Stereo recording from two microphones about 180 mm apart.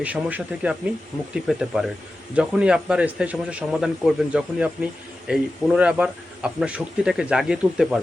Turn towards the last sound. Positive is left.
turn(degrees=-5)  # may be behind; listen again after turning